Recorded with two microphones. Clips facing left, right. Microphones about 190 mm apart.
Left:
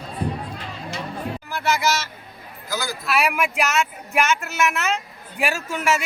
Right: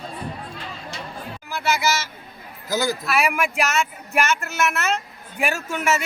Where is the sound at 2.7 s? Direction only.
20° right (ahead or behind).